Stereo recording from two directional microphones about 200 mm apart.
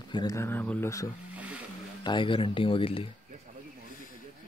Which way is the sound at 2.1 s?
25° left (ahead or behind).